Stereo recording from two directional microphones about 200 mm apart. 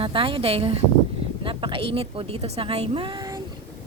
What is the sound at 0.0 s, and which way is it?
Speech, 25° right (ahead or behind).